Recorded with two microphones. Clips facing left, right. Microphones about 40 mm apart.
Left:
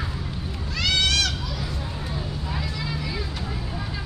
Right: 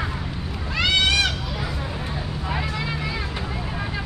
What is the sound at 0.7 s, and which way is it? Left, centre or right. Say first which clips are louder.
Children playing: right 3 dB; right.